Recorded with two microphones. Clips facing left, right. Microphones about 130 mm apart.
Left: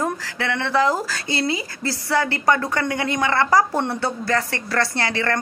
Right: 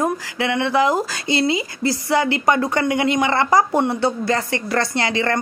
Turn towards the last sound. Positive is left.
turn(degrees=-20)  # may be behind; listen again after turning